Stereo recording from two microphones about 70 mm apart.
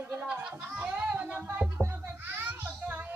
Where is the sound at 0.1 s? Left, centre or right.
Right.